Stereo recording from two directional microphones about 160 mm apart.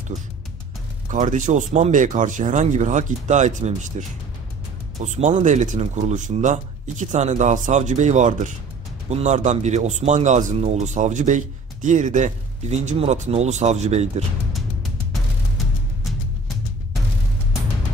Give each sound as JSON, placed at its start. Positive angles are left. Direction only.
{"t": 1.1, "sound": "speech", "side_deg": -50}
{"t": 5.0, "sound": "speech", "side_deg": -50}